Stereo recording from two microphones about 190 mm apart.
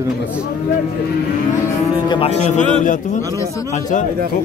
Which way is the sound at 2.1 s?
30° left (ahead or behind).